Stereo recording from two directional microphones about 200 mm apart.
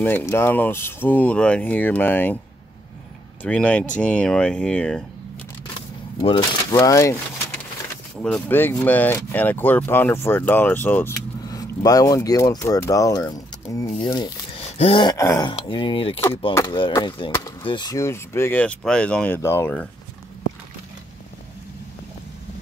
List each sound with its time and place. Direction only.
0.0 s speech: 10° left (ahead or behind)
3.4 s speech: 5° left (ahead or behind)
5.8 s a sound: 25° left (ahead or behind)
8.2 s speech: 10° left (ahead or behind)